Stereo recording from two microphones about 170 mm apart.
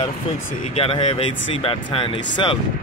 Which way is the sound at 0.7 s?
35° left (ahead or behind).